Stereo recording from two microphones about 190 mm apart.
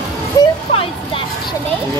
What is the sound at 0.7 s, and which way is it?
Music, 30° left (ahead or behind).